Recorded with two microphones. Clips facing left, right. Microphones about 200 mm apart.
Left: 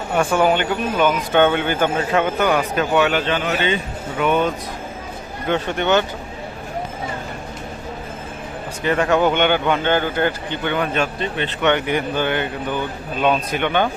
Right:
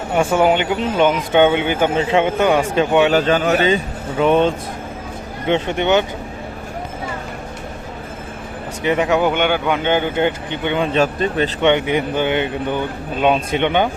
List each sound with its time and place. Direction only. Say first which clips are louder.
0.2 s a man's voice: right 2 dB; 20° right (ahead or behind)
3.1 s a man's voice: right 5 dB; 40° right (ahead or behind); by 6.1 s 20° right (ahead or behind)
8.8 s speech: right 1 dB; 15° right (ahead or behind)
10.9 s a man's voice: right 5 dB; 40° right (ahead or behind)
11.6 s a man's voice: right 2 dB; 20° right (ahead or behind)